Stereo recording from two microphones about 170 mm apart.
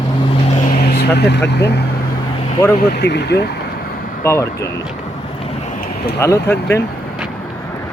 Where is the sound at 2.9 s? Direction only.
80° left.